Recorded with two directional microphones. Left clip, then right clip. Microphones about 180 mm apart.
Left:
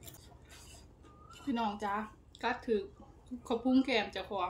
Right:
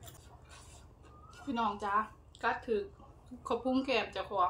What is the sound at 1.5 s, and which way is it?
A woman's voice, 20° left (ahead or behind).